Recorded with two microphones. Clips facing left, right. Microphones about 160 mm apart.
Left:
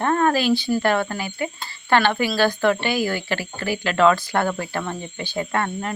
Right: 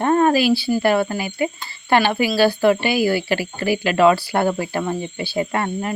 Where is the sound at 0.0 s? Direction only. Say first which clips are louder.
Right 4 dB; 20° right (ahead or behind).